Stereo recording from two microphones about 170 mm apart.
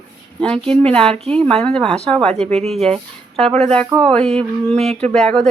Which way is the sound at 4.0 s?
5° left (ahead or behind).